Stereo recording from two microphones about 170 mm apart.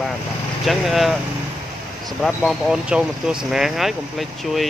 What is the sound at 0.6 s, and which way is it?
Speech, centre (ahead or behind).